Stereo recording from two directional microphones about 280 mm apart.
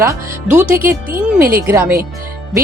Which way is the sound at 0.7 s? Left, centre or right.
Right.